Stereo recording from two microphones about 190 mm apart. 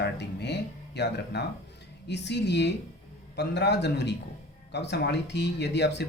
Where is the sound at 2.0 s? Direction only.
65° left (ahead or behind).